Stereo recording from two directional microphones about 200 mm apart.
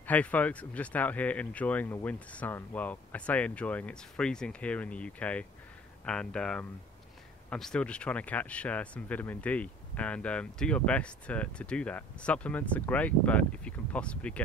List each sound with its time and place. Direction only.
0.0 s speech: 5° left (ahead or behind)